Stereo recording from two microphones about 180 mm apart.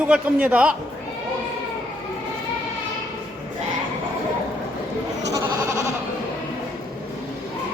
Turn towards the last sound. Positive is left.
turn(degrees=-20)  # may be behind; listen again after turning